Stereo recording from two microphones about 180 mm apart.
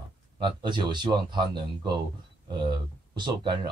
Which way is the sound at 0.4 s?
25° right (ahead or behind).